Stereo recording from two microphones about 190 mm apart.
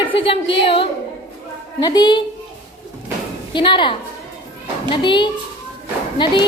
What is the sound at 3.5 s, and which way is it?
A woman's voice, 25° left (ahead or behind).